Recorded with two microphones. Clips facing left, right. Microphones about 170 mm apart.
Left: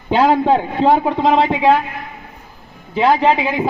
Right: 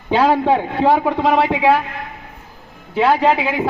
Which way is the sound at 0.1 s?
15° left (ahead or behind).